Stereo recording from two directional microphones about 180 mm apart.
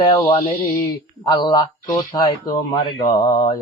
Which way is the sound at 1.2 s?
25° left (ahead or behind).